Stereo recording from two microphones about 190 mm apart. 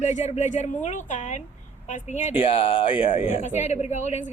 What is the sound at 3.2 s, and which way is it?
A woman's voice, 40° left (ahead or behind).